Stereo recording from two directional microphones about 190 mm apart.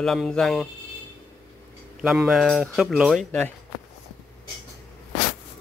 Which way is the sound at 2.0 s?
Centre (ahead or behind).